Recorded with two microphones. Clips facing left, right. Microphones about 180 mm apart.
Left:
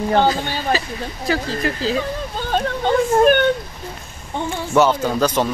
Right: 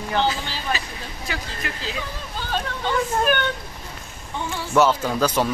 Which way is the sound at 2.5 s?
45° left (ahead or behind).